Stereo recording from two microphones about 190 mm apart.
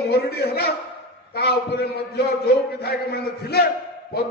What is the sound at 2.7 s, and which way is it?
Speech, 55° left (ahead or behind).